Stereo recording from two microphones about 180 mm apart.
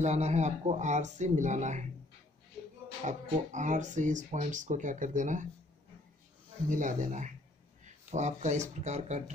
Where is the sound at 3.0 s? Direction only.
45° right (ahead or behind).